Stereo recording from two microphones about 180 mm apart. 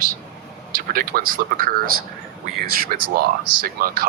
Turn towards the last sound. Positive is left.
turn(degrees=-55)  # may be behind; listen again after turning